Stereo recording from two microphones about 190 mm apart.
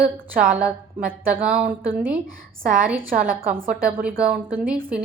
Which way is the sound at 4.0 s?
5° right (ahead or behind).